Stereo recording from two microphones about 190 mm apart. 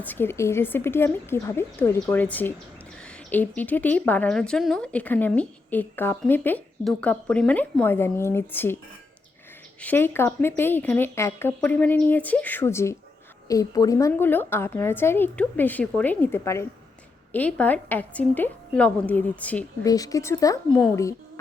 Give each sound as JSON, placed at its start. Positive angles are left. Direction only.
{"t": 0.0, "sound": "speech", "side_deg": 10}
{"t": 9.8, "sound": "speech", "side_deg": 10}
{"t": 19.8, "sound": "speech", "side_deg": 20}